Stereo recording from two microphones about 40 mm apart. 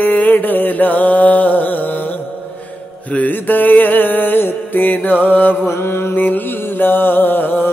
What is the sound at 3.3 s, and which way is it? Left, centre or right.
Mantra, left.